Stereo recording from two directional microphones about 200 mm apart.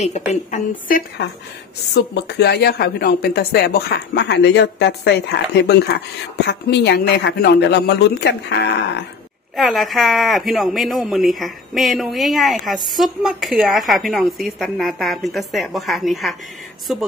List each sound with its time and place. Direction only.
0.0 s a woman's voice: 35° left (ahead or behind); by 9.0 s 60° left (ahead or behind)
9.6 s a woman's voice: centre (ahead or behind)